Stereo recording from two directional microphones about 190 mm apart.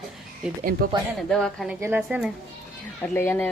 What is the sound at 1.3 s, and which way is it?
A woman's voice, 5° left (ahead or behind).